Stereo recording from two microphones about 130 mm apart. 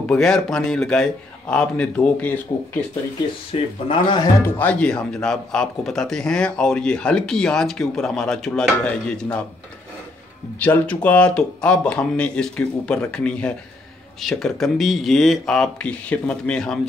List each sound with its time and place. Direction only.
0.1 s speech: 5° left (ahead or behind)
3.5 s speech: 45° left (ahead or behind)
4.6 s speech: 10° left (ahead or behind)
10.6 s speech: 10° left (ahead or behind)